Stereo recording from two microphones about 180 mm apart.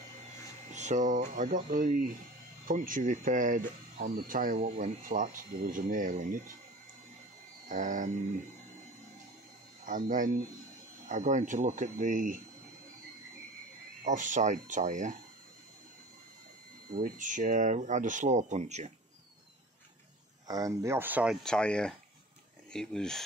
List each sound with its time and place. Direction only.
0.7 s speech: 40° right (ahead or behind)
7.6 s speech: 45° right (ahead or behind)
9.8 s speech: 50° right (ahead or behind)
14.0 s speech: 45° right (ahead or behind)
16.9 s speech: 50° right (ahead or behind)
20.4 s speech: 20° right (ahead or behind); by 23.2 s 5° left (ahead or behind)